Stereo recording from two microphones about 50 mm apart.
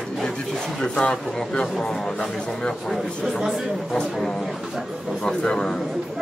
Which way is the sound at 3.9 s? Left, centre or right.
Centre.